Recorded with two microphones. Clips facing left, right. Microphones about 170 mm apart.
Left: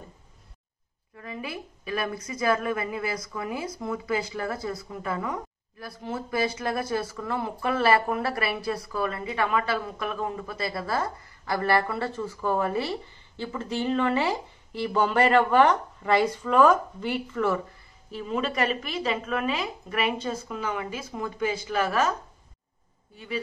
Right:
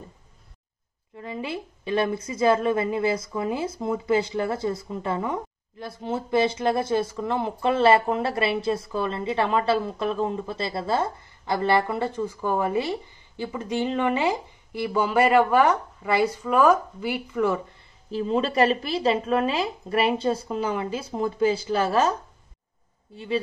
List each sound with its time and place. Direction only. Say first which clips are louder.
1.1 s a woman's voice: right 4 dB; 25° right (ahead or behind)
18.1 s a woman's voice: right 5 dB; 30° right (ahead or behind)
23.1 s a woman's voice: right 6 dB; 30° right (ahead or behind)